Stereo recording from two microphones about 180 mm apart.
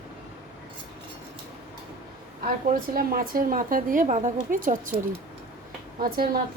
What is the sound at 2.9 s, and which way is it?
A woman's voice, 55° right (ahead or behind).